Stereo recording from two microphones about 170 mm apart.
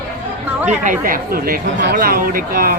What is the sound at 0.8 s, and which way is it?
A woman's voice, 55° right (ahead or behind).